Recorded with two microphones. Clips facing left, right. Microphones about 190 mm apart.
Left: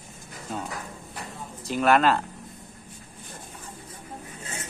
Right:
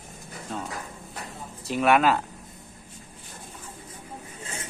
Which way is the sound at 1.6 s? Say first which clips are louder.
Even; centre (ahead or behind).